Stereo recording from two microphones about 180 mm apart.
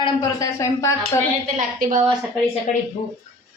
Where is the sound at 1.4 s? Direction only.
45° right (ahead or behind).